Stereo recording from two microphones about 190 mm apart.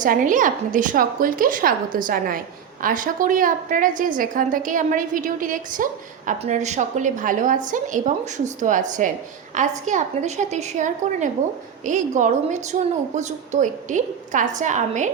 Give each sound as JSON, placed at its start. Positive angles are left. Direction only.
{"t": 0.0, "sound": "a woman's voice", "side_deg": -45}